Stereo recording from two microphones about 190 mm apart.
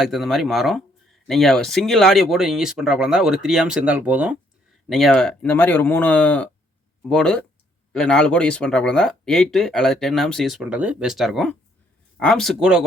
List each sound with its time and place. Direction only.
0.0 s speech: centre (ahead or behind)